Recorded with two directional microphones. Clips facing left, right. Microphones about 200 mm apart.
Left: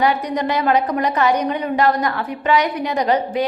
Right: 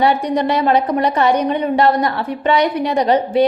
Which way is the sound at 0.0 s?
30° right (ahead or behind).